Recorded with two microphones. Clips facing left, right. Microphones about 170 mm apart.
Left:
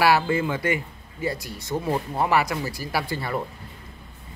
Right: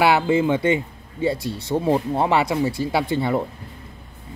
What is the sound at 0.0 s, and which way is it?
Speech, 20° right (ahead or behind).